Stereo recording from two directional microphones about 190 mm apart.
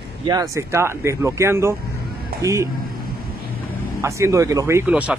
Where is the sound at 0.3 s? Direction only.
15° right (ahead or behind).